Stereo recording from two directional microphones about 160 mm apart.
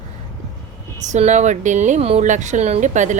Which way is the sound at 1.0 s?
45° right (ahead or behind).